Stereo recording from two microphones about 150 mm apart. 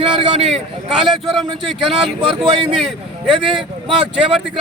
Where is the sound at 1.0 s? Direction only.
Centre (ahead or behind).